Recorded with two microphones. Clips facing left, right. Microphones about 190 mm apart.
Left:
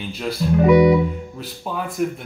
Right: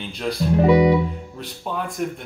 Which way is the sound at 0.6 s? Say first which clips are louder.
Left 2 dB; 30° right (ahead or behind).